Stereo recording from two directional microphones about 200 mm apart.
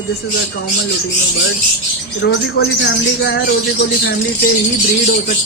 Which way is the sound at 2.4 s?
60° left (ahead or behind).